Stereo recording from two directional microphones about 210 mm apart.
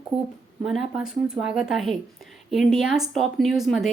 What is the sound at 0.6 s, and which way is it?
Speech, centre (ahead or behind).